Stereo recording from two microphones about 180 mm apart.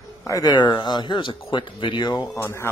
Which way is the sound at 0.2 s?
20° left (ahead or behind).